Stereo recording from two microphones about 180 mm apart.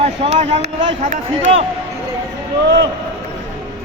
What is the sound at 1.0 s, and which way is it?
Speech, 40° right (ahead or behind).